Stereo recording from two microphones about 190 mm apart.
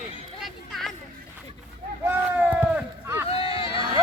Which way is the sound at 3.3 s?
30° left (ahead or behind).